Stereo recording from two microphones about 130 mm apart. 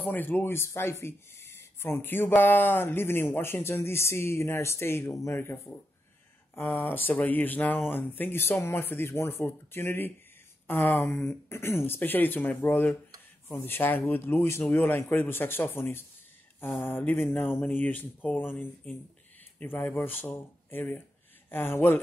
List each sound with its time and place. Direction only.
0.0 s speech: 15° left (ahead or behind)